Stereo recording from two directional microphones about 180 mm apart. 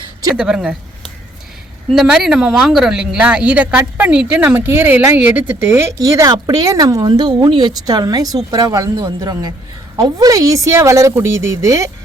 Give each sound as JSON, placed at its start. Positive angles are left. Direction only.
{"t": 0.3, "sound": "speech", "side_deg": -5}